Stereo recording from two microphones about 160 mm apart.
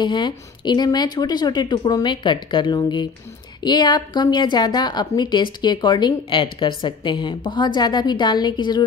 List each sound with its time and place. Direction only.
0.0 s speech: 30° left (ahead or behind)